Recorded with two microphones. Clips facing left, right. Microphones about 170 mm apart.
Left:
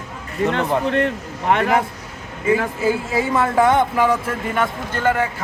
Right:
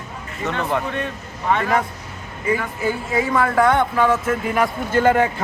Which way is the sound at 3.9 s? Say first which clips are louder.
Even; 10° left (ahead or behind).